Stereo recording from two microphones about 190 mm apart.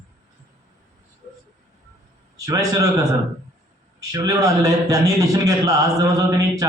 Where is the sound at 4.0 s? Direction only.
20° right (ahead or behind).